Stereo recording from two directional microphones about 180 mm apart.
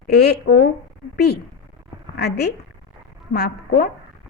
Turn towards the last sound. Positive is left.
turn(degrees=60)  # may be behind; listen again after turning